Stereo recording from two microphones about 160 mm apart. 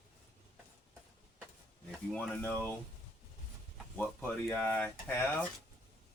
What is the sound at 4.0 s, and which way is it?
Speech, 10° left (ahead or behind).